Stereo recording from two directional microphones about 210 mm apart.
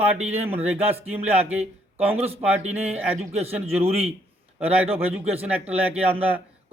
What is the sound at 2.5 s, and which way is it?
A man's voice, 5° right (ahead or behind).